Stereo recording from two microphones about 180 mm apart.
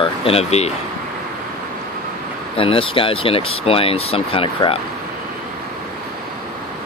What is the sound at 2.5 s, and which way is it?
Speech, 30° left (ahead or behind).